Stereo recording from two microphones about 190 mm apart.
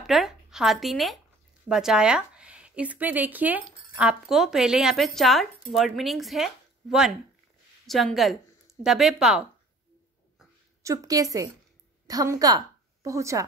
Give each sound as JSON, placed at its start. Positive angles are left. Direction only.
{"t": 0.0, "sound": "a woman's voice", "side_deg": 0}
{"t": 10.8, "sound": "a woman's voice", "side_deg": -15}